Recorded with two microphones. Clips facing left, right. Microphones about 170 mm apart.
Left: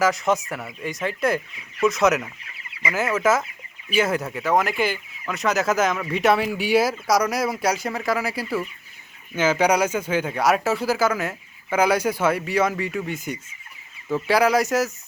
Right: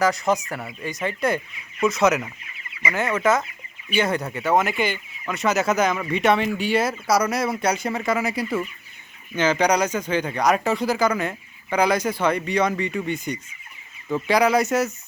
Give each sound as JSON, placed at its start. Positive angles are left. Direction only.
{"t": 0.0, "sound": "speech", "side_deg": 0}